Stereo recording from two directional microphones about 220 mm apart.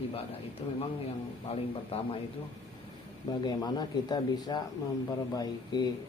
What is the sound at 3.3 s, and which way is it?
Speech, 20° left (ahead or behind).